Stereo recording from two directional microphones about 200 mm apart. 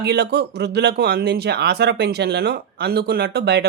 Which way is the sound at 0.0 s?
55° right (ahead or behind).